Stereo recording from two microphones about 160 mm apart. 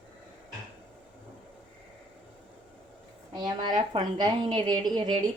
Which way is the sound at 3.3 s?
25° right (ahead or behind).